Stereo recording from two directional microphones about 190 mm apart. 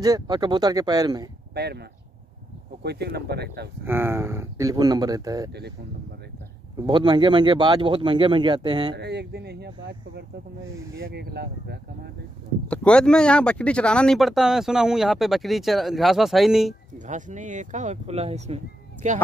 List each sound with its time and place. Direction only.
0.0 s speech: 20° right (ahead or behind)
1.5 s speech: 60° right (ahead or behind)
3.8 s speech: 10° right (ahead or behind)
6.9 s speech: 25° right (ahead or behind)
8.9 s speech: 60° right (ahead or behind)
12.6 s speech: 5° left (ahead or behind)
17.0 s speech: 40° right (ahead or behind)